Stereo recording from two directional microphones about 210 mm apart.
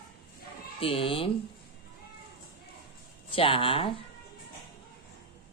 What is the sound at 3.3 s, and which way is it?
Speech, 25° left (ahead or behind).